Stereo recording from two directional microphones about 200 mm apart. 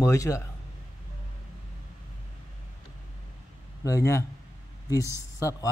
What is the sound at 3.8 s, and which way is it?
Speech, 15° left (ahead or behind).